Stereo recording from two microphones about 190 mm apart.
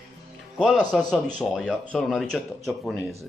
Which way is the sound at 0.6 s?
5° left (ahead or behind).